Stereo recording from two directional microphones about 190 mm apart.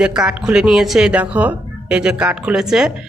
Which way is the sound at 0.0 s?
5° right (ahead or behind).